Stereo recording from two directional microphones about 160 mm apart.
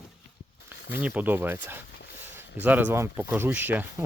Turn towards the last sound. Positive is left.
turn(degrees=-10)  # may be behind; listen again after turning